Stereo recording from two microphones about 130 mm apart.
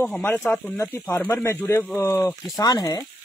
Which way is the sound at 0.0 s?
5° left (ahead or behind).